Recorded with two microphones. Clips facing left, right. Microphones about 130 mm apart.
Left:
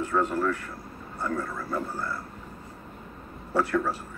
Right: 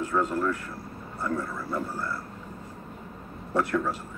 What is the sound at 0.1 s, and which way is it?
Speech, centre (ahead or behind).